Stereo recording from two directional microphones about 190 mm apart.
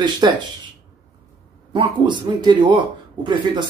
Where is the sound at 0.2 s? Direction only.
20° right (ahead or behind).